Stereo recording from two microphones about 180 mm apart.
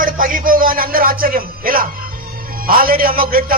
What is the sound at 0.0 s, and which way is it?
A man's voice, 50° right (ahead or behind).